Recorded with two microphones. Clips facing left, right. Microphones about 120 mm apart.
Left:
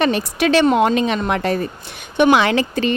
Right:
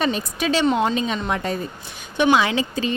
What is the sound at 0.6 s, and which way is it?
Speech, 60° left (ahead or behind).